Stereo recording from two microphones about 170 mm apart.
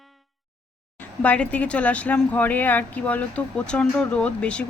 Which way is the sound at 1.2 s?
10° left (ahead or behind).